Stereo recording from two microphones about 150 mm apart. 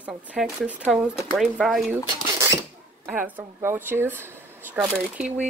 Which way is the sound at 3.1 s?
10° right (ahead or behind).